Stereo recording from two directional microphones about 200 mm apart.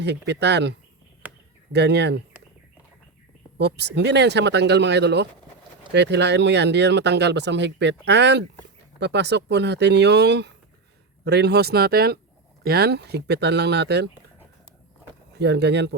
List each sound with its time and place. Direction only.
0.0 s speech: 60° right (ahead or behind)
3.6 s speech: 55° right (ahead or behind)
15.4 s speech: 55° right (ahead or behind)